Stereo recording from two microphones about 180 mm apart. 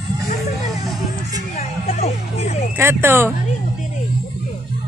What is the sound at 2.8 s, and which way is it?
Speech, 15° right (ahead or behind).